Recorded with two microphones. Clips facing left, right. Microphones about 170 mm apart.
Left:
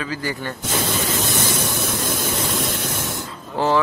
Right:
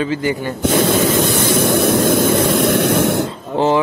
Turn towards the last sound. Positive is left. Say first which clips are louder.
# right 5 dB
turn(degrees=-20)  # may be behind; listen again after turning